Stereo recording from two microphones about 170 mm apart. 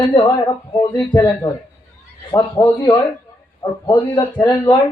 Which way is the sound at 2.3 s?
20° left (ahead or behind).